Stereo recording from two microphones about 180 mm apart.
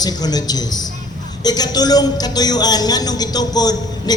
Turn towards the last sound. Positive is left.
turn(degrees=20)  # may be behind; listen again after turning